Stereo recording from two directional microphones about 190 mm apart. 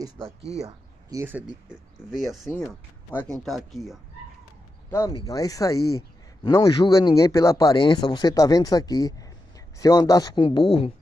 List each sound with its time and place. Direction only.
0.4 s speech: 35° right (ahead or behind)
0.7 s speech: 15° right (ahead or behind)
2.5 s speech: 5° left (ahead or behind)
4.9 s speech: 20° left (ahead or behind)